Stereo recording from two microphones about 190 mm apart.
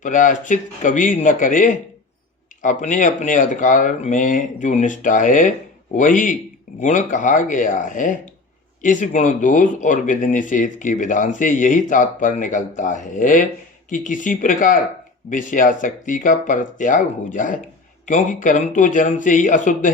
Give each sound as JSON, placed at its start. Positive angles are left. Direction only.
{"t": 0.0, "sound": "speech", "side_deg": 40}